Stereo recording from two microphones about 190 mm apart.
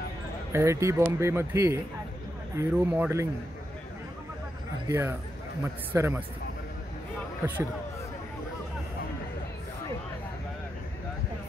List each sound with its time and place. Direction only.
0.5 s speech: 15° right (ahead or behind)
4.8 s speech: 15° right (ahead or behind)